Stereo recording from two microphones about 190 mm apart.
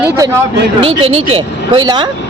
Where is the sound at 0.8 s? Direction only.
30° right (ahead or behind).